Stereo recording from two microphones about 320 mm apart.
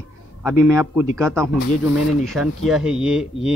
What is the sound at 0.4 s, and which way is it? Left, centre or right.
A man's voice, centre.